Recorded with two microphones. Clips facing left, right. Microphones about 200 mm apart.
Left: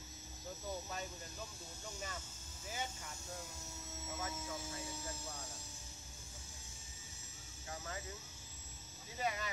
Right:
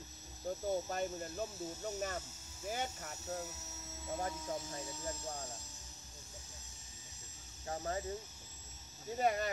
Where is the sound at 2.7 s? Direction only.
50° right (ahead or behind).